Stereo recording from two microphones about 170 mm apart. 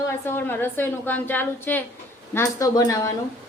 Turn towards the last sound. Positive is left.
turn(degrees=20)  # may be behind; listen again after turning